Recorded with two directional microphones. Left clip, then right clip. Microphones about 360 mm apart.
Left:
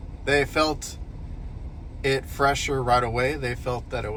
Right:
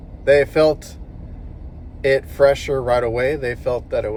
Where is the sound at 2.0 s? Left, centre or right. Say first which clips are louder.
Right 8 dB; centre.